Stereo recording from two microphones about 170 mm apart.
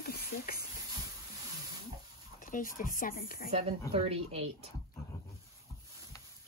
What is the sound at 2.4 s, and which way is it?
Speech, 55° left (ahead or behind).